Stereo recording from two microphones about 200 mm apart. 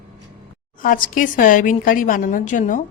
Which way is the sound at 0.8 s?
45° left (ahead or behind).